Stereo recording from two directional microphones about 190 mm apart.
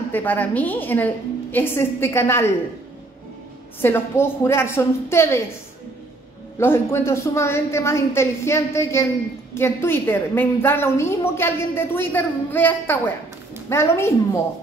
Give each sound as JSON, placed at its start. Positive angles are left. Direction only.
{"t": 0.1, "sound": "a woman's voice", "side_deg": 10}
{"t": 3.8, "sound": "a woman's voice", "side_deg": 10}
{"t": 6.6, "sound": "a woman's voice", "side_deg": 10}